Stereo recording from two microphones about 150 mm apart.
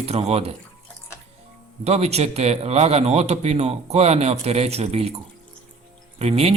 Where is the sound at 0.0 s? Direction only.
40° right (ahead or behind).